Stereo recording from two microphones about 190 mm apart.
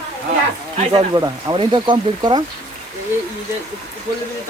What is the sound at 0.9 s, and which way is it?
Speech, 20° right (ahead or behind).